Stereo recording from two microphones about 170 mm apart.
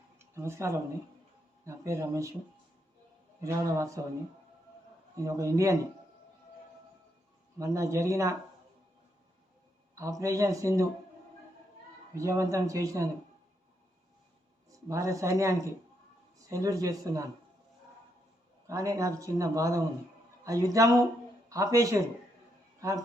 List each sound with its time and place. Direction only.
0.2 s speech: 15° right (ahead or behind)
3.4 s speech: 15° right (ahead or behind)
5.1 s speech: 20° right (ahead or behind)
7.6 s speech: 20° right (ahead or behind)
9.9 s speech: 20° right (ahead or behind)
12.1 s speech: 20° right (ahead or behind)
14.7 s a man's voice: 20° right (ahead or behind)
18.7 s speech: 20° right (ahead or behind)